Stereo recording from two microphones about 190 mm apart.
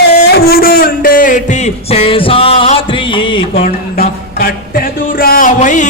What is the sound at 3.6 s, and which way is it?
Music, 50° left (ahead or behind).